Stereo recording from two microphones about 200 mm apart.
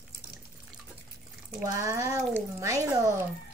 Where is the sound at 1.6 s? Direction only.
15° right (ahead or behind).